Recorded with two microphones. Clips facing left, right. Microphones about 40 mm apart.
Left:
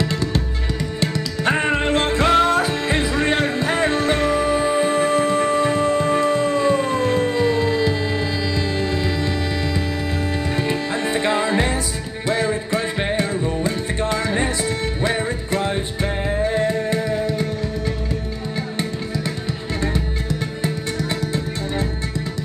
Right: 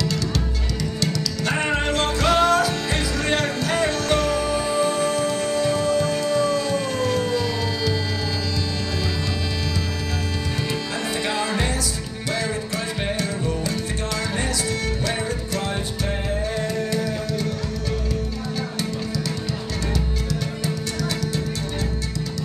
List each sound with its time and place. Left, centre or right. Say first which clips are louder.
0.0 s music: left 3 dB; left
10.7 s music: left 5 dB; left
19.9 s music: left 2 dB; left